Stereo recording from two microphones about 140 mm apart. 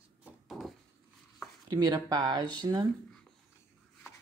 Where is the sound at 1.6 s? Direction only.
30° right (ahead or behind).